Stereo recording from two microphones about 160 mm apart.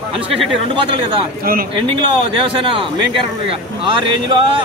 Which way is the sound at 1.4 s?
65° right (ahead or behind).